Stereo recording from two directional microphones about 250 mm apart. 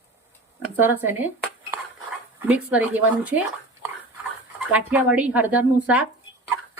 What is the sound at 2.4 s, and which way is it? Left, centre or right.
Speech, centre.